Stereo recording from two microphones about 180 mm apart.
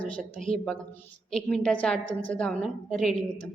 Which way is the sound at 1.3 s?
5° left (ahead or behind).